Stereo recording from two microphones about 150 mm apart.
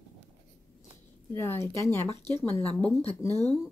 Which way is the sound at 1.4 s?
15° left (ahead or behind).